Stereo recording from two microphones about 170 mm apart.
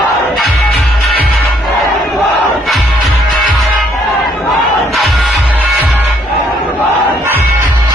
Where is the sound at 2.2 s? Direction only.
Centre (ahead or behind).